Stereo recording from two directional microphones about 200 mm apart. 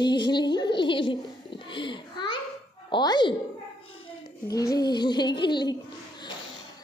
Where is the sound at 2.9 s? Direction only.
20° left (ahead or behind).